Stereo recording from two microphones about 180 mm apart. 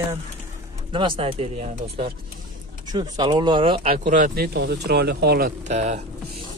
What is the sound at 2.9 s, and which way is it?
Speech, 25° right (ahead or behind).